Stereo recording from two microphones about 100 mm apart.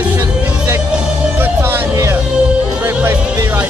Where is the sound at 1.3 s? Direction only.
20° right (ahead or behind).